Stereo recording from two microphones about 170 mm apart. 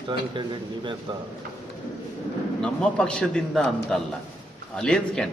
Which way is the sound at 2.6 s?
5° left (ahead or behind).